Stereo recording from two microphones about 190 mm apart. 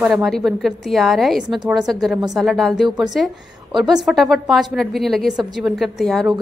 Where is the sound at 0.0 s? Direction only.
Centre (ahead or behind).